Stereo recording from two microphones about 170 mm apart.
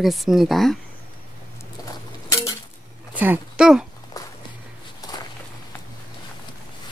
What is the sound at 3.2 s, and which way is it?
Speech, 5° right (ahead or behind).